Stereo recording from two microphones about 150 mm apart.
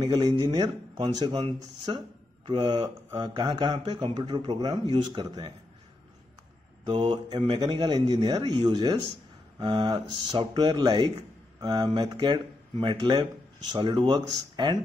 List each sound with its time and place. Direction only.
0.0 s speech: 30° right (ahead or behind)
6.9 s speech: 30° right (ahead or behind)